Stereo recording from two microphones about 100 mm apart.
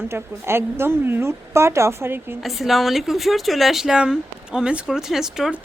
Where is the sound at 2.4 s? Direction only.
Centre (ahead or behind).